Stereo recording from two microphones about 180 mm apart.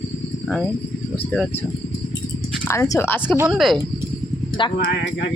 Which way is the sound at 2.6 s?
15° left (ahead or behind).